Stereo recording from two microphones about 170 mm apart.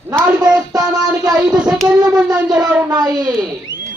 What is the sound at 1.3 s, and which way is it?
Child singing, 5° right (ahead or behind).